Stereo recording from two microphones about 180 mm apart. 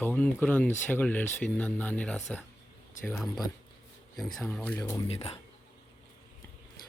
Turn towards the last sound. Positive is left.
turn(degrees=35)  # may be behind; listen again after turning